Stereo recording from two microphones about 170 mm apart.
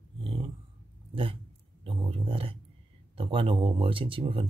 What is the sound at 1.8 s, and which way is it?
Speech, 35° right (ahead or behind).